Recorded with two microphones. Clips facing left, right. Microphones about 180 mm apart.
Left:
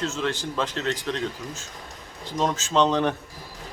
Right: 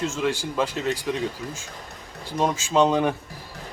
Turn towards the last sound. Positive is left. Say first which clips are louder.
# right 2 dB
turn(degrees=-10)  # may be behind; listen again after turning